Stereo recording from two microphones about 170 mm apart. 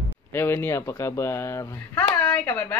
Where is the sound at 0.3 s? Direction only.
15° left (ahead or behind).